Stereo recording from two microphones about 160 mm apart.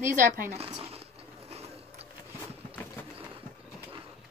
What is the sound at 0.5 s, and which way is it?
Zipper, 40° right (ahead or behind).